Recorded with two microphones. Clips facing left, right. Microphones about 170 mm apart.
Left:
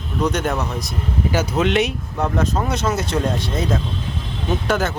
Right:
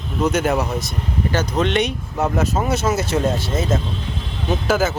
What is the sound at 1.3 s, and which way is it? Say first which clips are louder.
Speech: left 1 dB; 5° left (ahead or behind).